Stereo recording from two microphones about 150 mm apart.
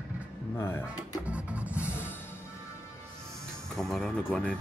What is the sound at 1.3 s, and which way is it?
Music, 10° right (ahead or behind).